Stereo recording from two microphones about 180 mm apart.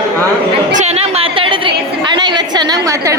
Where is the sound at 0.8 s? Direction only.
30° right (ahead or behind).